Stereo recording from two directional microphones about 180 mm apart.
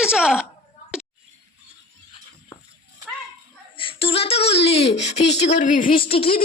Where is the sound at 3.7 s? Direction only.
30° left (ahead or behind).